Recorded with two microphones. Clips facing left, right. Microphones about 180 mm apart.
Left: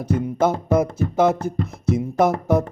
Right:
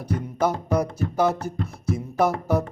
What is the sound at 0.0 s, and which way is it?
Music, 20° left (ahead or behind).